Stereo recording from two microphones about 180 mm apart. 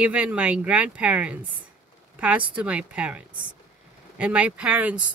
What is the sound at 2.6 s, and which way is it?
Speech, 5° right (ahead or behind).